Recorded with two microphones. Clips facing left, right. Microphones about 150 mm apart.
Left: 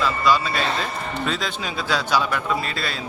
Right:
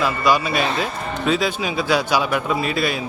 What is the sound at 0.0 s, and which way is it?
A man's voice, 15° right (ahead or behind).